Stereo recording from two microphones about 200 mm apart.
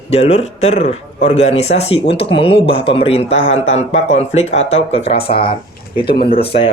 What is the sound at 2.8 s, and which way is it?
A man's voice, 30° left (ahead or behind).